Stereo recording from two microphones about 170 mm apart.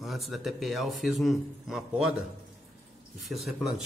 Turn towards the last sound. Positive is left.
turn(degrees=0)  # may be behind; listen again after turning